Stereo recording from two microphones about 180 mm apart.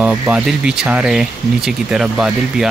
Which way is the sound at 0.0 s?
5° right (ahead or behind).